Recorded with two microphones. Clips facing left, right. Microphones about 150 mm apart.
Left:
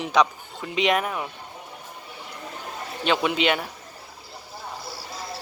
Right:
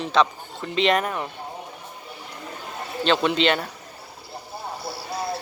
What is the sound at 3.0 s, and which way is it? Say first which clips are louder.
Speech: right 2 dB; 10° left (ahead or behind).